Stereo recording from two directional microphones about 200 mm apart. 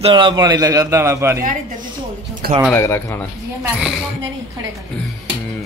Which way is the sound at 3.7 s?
Centre (ahead or behind).